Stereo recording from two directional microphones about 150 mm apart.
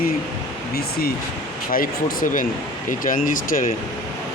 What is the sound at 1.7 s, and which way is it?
Speech, 70° left (ahead or behind).